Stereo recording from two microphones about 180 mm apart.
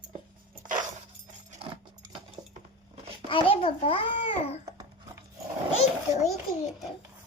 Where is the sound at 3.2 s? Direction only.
30° left (ahead or behind).